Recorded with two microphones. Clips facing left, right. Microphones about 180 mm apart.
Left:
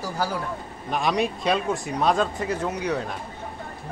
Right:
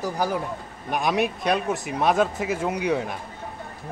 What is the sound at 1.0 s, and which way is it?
A man's voice, 5° right (ahead or behind).